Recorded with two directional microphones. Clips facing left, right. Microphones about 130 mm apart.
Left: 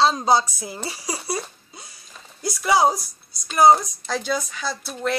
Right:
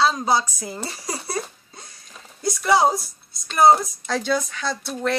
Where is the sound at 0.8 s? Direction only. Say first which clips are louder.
Left 2 dB; 5° left (ahead or behind).